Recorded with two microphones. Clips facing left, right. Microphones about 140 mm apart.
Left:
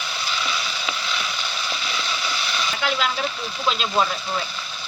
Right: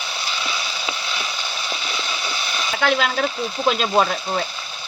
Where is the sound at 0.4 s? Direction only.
25° right (ahead or behind).